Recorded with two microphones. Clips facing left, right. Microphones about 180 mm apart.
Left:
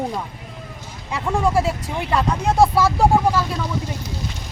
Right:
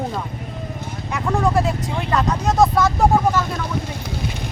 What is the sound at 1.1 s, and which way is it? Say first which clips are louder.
Speech: even; 10° left (ahead or behind).